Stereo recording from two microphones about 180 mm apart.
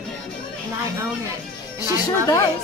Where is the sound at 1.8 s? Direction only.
20° left (ahead or behind).